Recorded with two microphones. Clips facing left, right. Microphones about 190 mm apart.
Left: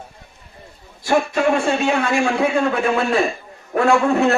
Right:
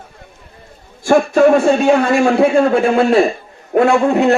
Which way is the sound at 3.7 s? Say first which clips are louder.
Right 4 dB; 20° right (ahead or behind).